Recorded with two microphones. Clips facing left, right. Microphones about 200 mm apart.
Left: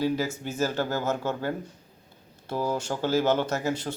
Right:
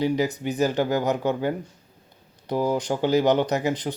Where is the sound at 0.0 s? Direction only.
15° right (ahead or behind).